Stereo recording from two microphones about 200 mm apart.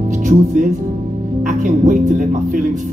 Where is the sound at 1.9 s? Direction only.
40° right (ahead or behind).